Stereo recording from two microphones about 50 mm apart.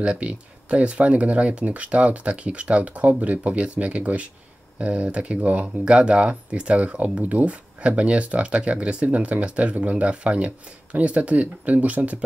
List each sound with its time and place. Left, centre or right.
0.0 s speech: right